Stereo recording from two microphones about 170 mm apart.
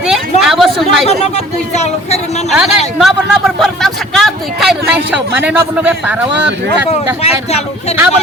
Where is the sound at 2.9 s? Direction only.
Centre (ahead or behind).